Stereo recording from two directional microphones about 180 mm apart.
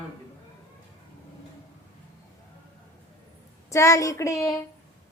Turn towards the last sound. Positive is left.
turn(degrees=20)  # may be behind; listen again after turning